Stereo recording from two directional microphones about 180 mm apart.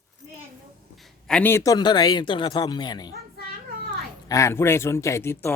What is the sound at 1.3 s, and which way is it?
Speech, 10° left (ahead or behind).